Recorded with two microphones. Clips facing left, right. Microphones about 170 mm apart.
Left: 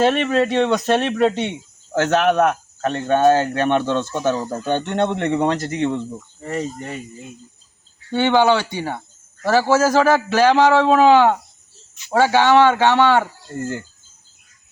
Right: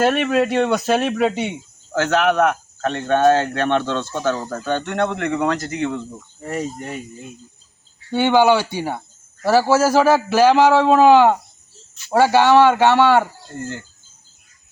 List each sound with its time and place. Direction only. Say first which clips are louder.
0.0 s speech: even; 5° right (ahead or behind)
1.9 s speech: left 1 dB; 20° left (ahead or behind)
6.4 s speech: even; 5° right (ahead or behind)
8.1 s a man's voice: right 1 dB; 10° right (ahead or behind)